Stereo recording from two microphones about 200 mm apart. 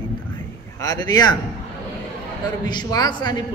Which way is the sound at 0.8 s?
20° left (ahead or behind).